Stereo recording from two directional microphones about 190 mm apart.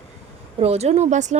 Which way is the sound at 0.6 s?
35° right (ahead or behind).